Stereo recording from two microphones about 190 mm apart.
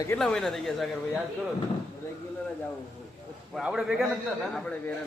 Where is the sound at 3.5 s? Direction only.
5° right (ahead or behind).